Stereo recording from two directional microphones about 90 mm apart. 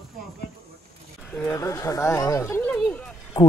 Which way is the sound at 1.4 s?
35° left (ahead or behind).